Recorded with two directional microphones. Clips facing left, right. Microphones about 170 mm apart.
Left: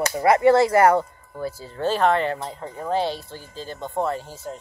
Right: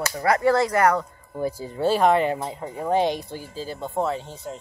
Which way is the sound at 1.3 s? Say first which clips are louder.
Right 3 dB; 15° right (ahead or behind).